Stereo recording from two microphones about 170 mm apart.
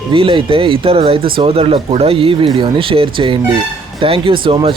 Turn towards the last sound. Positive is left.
turn(degrees=-30)  # may be behind; listen again after turning